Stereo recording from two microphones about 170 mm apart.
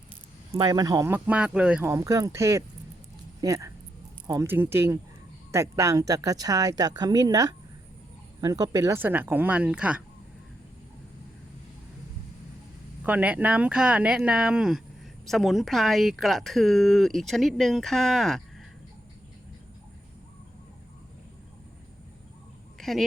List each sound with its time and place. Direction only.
0.5 s speech: 25° right (ahead or behind); by 10.0 s 5° right (ahead or behind)
13.0 s speech: 10° right (ahead or behind)
22.8 s speech: centre (ahead or behind)